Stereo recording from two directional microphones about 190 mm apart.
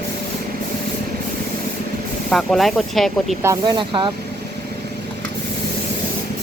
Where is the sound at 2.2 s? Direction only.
Centre (ahead or behind).